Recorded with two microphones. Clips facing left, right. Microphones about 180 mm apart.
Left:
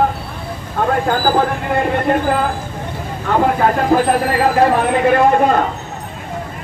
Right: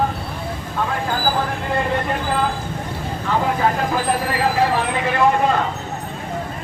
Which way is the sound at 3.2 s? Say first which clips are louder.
Left 5 dB; 50° left (ahead or behind).